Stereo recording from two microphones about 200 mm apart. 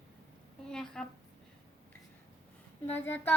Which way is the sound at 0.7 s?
5° left (ahead or behind).